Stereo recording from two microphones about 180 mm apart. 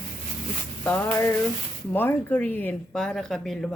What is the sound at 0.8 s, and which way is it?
Speech, 10° left (ahead or behind).